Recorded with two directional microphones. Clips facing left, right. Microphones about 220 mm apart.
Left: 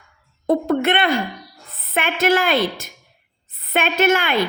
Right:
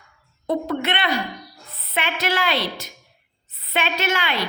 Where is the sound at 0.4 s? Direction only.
50° left (ahead or behind).